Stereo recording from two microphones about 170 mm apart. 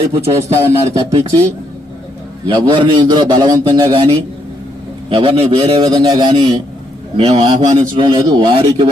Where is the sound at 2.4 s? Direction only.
30° right (ahead or behind).